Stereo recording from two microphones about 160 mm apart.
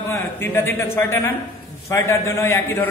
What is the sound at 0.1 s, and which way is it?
A man's voice, 15° left (ahead or behind).